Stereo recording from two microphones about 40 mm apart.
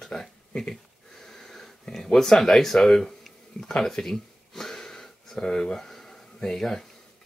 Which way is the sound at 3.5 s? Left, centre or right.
Centre.